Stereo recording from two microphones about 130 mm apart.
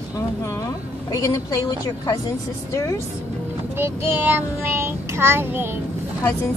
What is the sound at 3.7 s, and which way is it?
Child singing, 15° right (ahead or behind).